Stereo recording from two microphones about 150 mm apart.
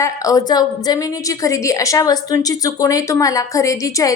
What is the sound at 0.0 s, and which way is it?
A woman's voice, 25° left (ahead or behind).